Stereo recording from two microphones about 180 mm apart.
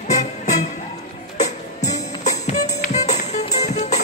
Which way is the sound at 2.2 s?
40° left (ahead or behind).